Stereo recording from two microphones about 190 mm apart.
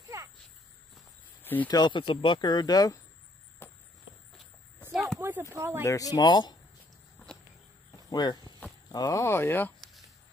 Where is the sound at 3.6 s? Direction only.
10° left (ahead or behind).